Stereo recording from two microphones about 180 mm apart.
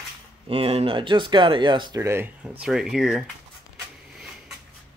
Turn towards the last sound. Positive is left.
turn(degrees=-5)  # may be behind; listen again after turning